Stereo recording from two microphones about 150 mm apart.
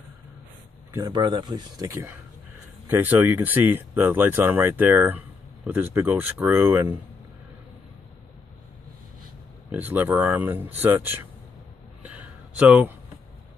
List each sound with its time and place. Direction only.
0.9 s speech: 25° right (ahead or behind)
2.9 s speech: 15° right (ahead or behind)
9.7 s speech: 10° right (ahead or behind)
12.0 s a sound: 10° right (ahead or behind)